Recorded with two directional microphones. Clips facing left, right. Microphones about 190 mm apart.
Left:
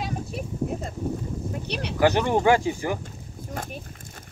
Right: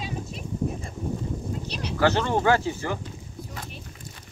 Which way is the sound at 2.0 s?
15° left (ahead or behind).